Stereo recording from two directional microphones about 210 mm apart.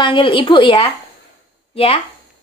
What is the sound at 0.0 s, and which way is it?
Speech, 25° left (ahead or behind).